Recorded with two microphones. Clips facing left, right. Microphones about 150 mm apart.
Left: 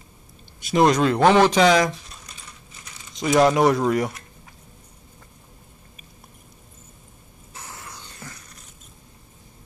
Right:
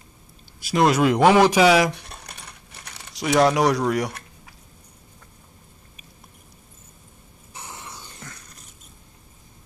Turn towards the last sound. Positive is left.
turn(degrees=-20)  # may be behind; listen again after turning